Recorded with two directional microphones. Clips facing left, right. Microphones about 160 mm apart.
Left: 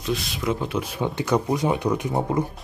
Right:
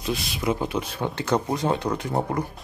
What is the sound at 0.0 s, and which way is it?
Speech, 5° right (ahead or behind).